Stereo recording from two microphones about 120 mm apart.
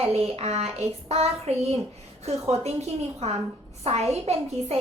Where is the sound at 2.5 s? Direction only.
60° right (ahead or behind).